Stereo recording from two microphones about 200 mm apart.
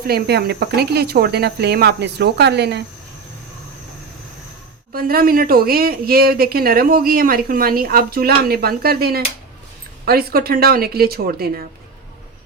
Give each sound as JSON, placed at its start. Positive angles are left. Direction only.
{"t": 0.1, "sound": "speech", "side_deg": -55}
{"t": 4.9, "sound": "speech", "side_deg": -45}